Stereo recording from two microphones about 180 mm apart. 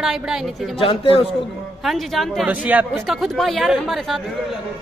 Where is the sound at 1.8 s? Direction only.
Centre (ahead or behind).